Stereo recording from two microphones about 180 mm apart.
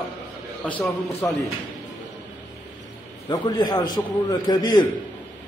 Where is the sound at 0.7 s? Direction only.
5° left (ahead or behind).